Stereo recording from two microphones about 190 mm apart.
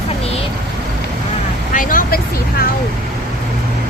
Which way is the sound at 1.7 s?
45° left (ahead or behind).